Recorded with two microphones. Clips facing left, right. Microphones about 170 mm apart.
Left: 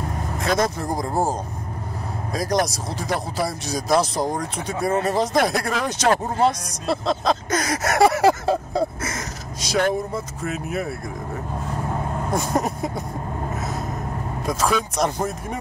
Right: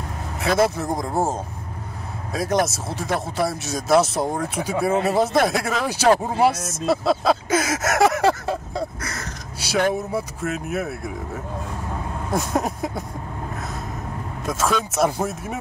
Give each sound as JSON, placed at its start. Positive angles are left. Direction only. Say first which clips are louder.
{"t": 0.4, "sound": "speech", "louder": "right 3 dB", "side_deg": -5}
{"t": 2.3, "sound": "speech", "louder": "right 1 dB", "side_deg": -5}
{"t": 9.0, "sound": "speech", "louder": "left 3 dB", "side_deg": 20}
{"t": 9.7, "sound": "speech", "louder": "even", "side_deg": -5}
{"t": 12.3, "sound": "speech", "louder": "right 1 dB", "side_deg": 0}
{"t": 14.4, "sound": "speech", "louder": "even", "side_deg": 0}